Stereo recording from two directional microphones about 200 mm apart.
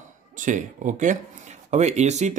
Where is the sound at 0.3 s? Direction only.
40° right (ahead or behind).